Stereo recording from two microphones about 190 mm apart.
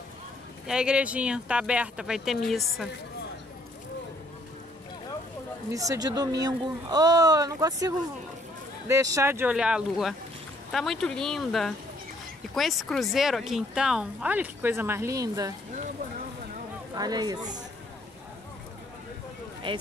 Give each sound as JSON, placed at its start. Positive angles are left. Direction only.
{"t": 0.7, "sound": "speech", "side_deg": -5}
{"t": 5.7, "sound": "speech", "side_deg": -15}
{"t": 16.9, "sound": "speech", "side_deg": -20}
{"t": 19.7, "sound": "speech", "side_deg": -25}